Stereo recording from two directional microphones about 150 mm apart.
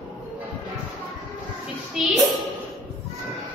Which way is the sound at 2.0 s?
5° right (ahead or behind).